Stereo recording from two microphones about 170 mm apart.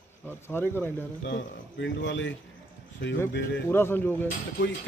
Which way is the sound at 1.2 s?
90° left.